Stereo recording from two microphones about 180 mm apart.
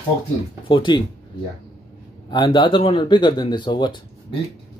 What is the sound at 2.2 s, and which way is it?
Speech, 25° left (ahead or behind).